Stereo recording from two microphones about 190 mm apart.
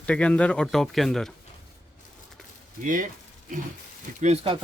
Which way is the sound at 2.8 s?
45° right (ahead or behind).